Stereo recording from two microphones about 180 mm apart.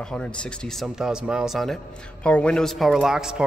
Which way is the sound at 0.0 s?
5° left (ahead or behind).